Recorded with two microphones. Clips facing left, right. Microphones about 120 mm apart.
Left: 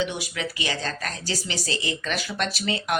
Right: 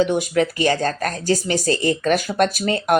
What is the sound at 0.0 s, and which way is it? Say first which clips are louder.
Speech: right 10 dB; 50° right (ahead or behind).